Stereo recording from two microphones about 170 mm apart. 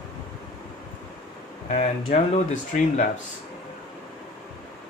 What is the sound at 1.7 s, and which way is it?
Speech, 45° left (ahead or behind).